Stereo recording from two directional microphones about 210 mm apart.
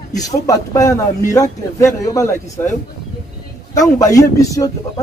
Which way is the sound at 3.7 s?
15° left (ahead or behind).